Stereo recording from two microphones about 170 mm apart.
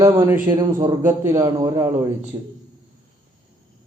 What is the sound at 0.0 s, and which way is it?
A man's voice, 20° right (ahead or behind).